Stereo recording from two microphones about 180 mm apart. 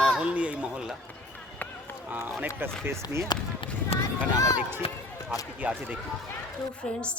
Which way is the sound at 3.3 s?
25° left (ahead or behind).